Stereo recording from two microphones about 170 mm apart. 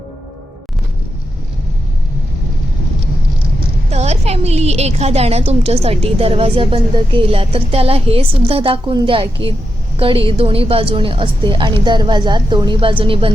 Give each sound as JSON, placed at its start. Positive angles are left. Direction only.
{"t": 3.8, "sound": "a woman's voice", "side_deg": -40}